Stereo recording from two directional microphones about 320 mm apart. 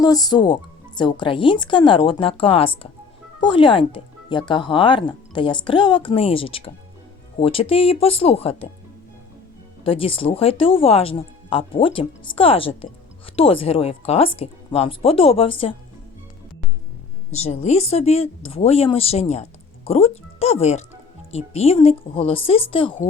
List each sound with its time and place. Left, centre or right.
0.0 s speech: centre
9.8 s speech: centre
17.3 s a woman's voice: centre